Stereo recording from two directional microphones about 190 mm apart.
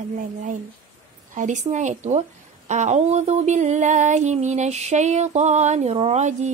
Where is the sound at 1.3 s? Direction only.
40° right (ahead or behind).